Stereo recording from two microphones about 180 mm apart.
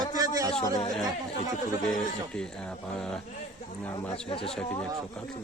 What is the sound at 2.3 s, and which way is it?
Speech, 5° left (ahead or behind).